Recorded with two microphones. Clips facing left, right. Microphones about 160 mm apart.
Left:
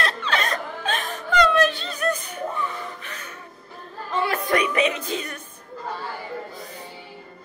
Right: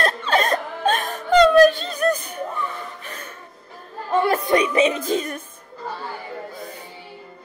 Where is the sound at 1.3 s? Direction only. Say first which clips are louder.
Right 7 dB; 35° right (ahead or behind).